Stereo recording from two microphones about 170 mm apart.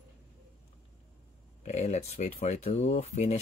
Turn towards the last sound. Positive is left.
turn(degrees=40)  # may be behind; listen again after turning